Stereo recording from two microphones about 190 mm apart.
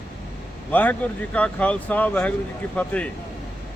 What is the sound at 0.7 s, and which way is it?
Speech, 10° left (ahead or behind).